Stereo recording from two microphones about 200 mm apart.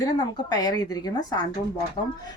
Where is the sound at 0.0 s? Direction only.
20° left (ahead or behind).